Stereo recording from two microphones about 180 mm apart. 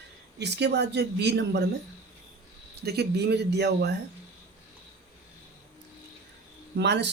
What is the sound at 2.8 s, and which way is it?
Speech, 65° right (ahead or behind).